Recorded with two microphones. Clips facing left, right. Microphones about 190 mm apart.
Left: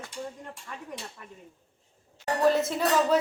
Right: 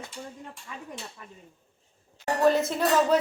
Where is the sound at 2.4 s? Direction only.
Centre (ahead or behind).